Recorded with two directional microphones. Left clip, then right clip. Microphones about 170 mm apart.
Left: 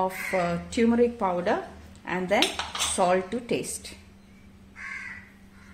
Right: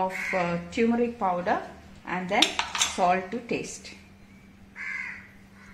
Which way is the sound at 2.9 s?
35° left (ahead or behind).